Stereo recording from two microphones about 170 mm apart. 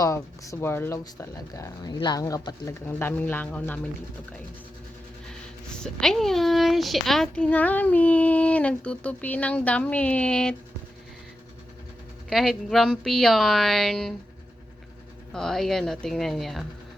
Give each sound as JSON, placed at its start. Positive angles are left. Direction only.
{"t": 0.0, "sound": "speech", "side_deg": 20}
{"t": 5.3, "sound": "speech", "side_deg": 5}
{"t": 12.3, "sound": "speech", "side_deg": 0}
{"t": 15.3, "sound": "speech", "side_deg": 0}